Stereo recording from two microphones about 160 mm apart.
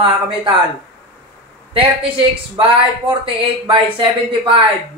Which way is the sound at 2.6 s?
35° right (ahead or behind).